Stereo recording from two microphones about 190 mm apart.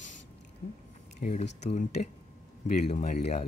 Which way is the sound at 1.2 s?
40° left (ahead or behind).